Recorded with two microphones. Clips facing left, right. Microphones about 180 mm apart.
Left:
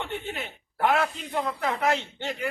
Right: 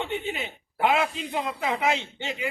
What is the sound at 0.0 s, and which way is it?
A man's voice, 15° right (ahead or behind).